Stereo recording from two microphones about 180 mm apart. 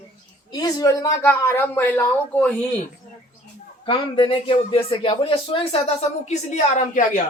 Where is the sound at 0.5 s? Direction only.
20° left (ahead or behind).